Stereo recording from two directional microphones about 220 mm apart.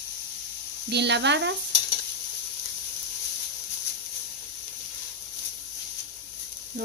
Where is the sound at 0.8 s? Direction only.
50° right (ahead or behind).